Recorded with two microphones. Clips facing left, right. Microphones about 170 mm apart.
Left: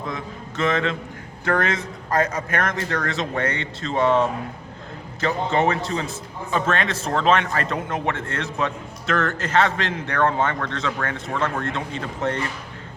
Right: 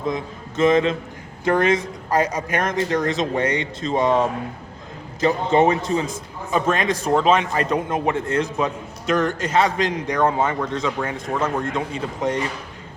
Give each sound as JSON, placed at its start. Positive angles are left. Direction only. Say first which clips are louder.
{"t": 0.1, "sound": "a man's voice", "louder": "right 4 dB", "side_deg": -20}